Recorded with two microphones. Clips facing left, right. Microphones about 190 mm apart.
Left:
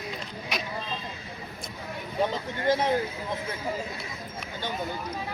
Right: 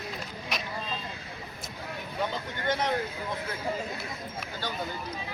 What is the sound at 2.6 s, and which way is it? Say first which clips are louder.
Speech: left 5 dB; 30° left (ahead or behind).